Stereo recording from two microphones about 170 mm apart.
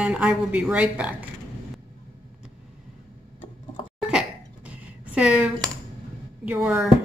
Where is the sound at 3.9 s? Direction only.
5° right (ahead or behind).